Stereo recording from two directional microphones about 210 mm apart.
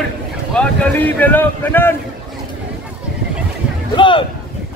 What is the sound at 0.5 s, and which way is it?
Boat, 10° left (ahead or behind).